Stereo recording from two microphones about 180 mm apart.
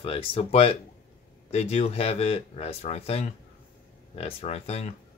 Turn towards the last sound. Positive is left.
turn(degrees=35)  # may be behind; listen again after turning